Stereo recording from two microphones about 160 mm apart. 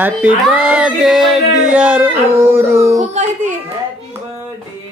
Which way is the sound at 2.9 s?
45° right (ahead or behind).